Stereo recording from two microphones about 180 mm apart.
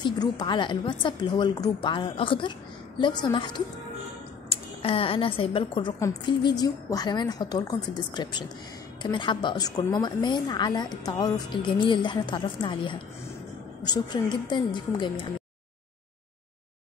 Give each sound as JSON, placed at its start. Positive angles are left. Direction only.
{"t": 0.0, "sound": "a woman's voice", "side_deg": 25}